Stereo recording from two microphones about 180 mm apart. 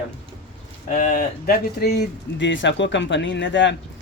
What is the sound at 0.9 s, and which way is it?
Speech, 50° left (ahead or behind).